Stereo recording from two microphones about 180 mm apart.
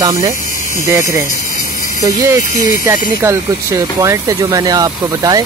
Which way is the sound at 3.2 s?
15° right (ahead or behind).